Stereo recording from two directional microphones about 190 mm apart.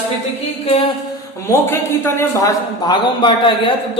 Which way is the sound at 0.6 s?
30° left (ahead or behind).